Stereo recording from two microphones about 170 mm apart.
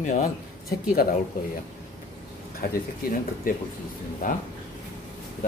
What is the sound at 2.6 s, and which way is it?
A man's voice, 65° left (ahead or behind).